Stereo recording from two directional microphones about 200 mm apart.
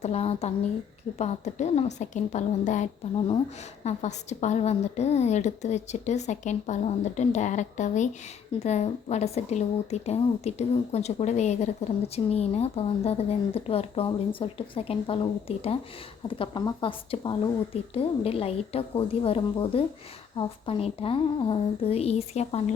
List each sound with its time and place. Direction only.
0.0 s a woman's voice: 30° left (ahead or behind)